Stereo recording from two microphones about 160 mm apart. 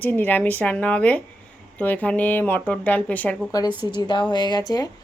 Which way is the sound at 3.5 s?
25° left (ahead or behind).